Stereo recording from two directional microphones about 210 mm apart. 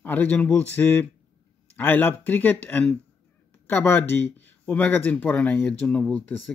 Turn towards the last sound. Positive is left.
turn(degrees=5)  # may be behind; listen again after turning